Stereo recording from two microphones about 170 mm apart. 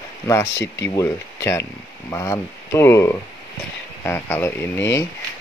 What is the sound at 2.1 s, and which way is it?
Speech, 15° left (ahead or behind).